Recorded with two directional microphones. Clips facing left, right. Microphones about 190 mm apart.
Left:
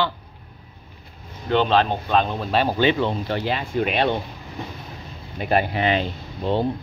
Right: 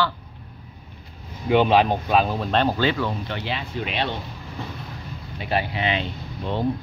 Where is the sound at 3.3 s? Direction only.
45° left (ahead or behind).